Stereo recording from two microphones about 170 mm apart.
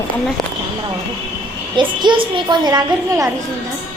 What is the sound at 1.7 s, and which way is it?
A woman's voice, 25° right (ahead or behind).